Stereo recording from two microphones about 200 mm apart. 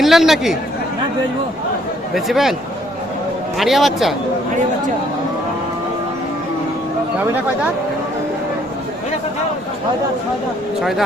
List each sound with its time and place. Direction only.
0.0 s speech: centre (ahead or behind)
2.1 s speech: centre (ahead or behind)
3.6 s speech: centre (ahead or behind)